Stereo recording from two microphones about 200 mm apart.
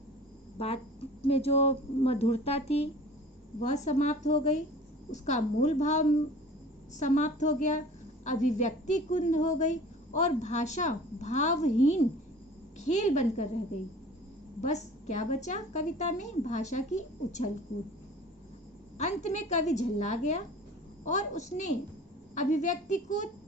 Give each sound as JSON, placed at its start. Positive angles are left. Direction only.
{"t": 1.3, "sound": "a woman's voice", "side_deg": 30}
{"t": 14.6, "sound": "a woman's voice", "side_deg": 35}
{"t": 18.9, "sound": "a woman's voice", "side_deg": 35}